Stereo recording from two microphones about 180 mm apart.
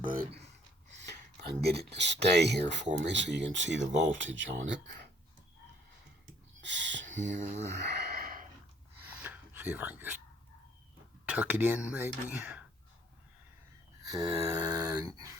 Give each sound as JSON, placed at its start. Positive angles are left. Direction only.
{"t": 0.0, "sound": "speech", "side_deg": -50}
{"t": 0.9, "sound": "speech", "side_deg": -65}
{"t": 2.8, "sound": "speech", "side_deg": -40}
{"t": 3.1, "sound": "speech", "side_deg": -80}
{"t": 6.6, "sound": "a sound", "side_deg": -85}
{"t": 7.2, "sound": "speech", "side_deg": -40}
{"t": 7.8, "sound": "gasp", "side_deg": -65}
{"t": 9.0, "sound": "a sound", "side_deg": -10}
{"t": 11.3, "sound": "speech", "side_deg": -10}
{"t": 14.0, "sound": "a sound", "side_deg": -20}